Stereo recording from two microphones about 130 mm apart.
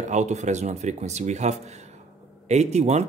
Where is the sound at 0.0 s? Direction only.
65° right (ahead or behind).